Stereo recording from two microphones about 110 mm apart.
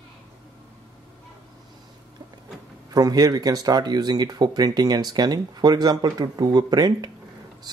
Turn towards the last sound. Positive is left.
turn(degrees=-35)  # may be behind; listen again after turning